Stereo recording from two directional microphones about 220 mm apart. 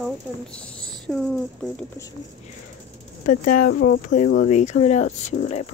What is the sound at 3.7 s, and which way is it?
Speech, 60° left (ahead or behind).